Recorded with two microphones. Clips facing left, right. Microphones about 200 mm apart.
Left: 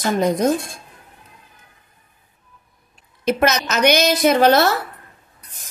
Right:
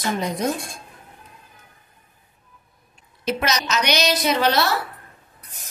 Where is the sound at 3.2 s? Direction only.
50° left (ahead or behind).